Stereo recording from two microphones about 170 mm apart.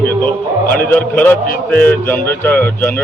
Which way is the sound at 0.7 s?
10° left (ahead or behind).